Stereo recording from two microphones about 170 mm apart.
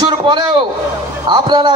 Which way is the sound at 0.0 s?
25° right (ahead or behind).